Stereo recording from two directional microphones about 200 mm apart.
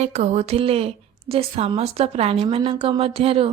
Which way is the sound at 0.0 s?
35° right (ahead or behind).